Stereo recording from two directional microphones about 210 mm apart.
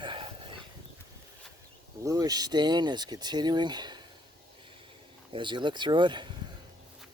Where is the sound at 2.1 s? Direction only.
15° right (ahead or behind).